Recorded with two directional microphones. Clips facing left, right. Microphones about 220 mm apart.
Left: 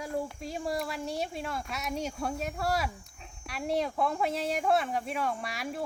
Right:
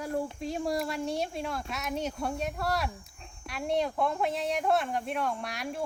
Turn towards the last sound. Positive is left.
turn(degrees=0)  # may be behind; listen again after turning